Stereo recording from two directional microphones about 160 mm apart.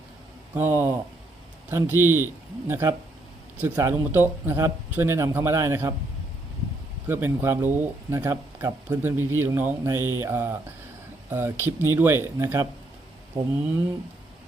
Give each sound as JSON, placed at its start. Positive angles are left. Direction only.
{"t": 0.5, "sound": "speech", "side_deg": -10}
{"t": 7.1, "sound": "speech", "side_deg": -15}